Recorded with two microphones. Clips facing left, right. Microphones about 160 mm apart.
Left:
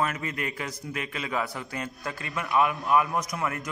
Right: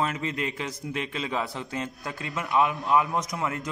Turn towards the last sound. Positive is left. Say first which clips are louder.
# right 1 dB
turn(degrees=-20)  # may be behind; listen again after turning